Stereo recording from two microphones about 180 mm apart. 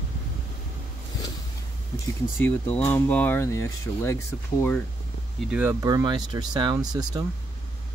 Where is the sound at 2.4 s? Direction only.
10° left (ahead or behind).